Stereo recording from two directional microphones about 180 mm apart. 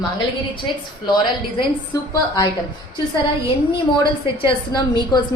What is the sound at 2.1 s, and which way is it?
Speech, 20° left (ahead or behind).